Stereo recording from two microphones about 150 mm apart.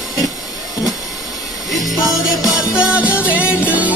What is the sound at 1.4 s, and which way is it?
Music, centre (ahead or behind).